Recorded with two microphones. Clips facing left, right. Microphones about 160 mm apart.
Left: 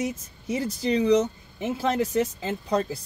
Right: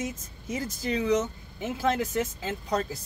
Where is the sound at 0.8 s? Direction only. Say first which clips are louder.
Left 5 dB; 30° left (ahead or behind).